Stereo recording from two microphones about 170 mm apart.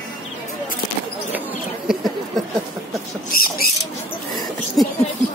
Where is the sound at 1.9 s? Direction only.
Centre (ahead or behind).